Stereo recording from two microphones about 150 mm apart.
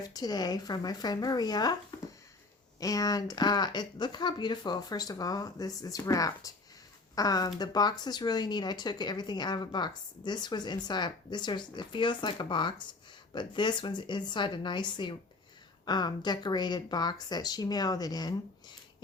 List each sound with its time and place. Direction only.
0.0 s speech: 25° left (ahead or behind)
2.8 s a woman's voice: 25° left (ahead or behind)